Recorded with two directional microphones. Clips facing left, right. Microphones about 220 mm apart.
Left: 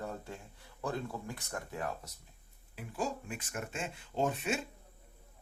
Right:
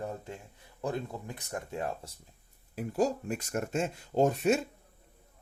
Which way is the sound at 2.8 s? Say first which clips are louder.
Right 8 dB; 40° right (ahead or behind).